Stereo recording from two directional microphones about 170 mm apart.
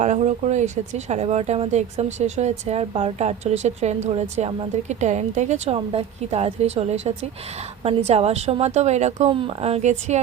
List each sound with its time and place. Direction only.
0.0 s a woman's voice: 45° right (ahead or behind)